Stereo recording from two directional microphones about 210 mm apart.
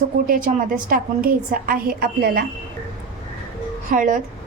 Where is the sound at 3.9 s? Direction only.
40° right (ahead or behind).